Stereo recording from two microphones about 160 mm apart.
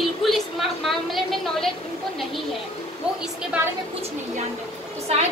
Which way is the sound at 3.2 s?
10° right (ahead or behind).